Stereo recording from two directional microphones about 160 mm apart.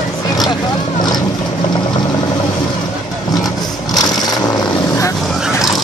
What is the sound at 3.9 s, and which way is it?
Vehicle, 25° left (ahead or behind).